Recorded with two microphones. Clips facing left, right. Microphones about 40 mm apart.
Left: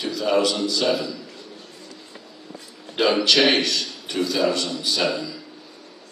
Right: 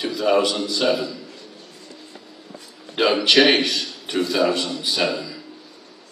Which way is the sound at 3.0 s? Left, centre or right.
Right.